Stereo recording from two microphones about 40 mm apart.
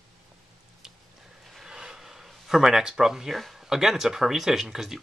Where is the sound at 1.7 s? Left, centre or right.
Centre.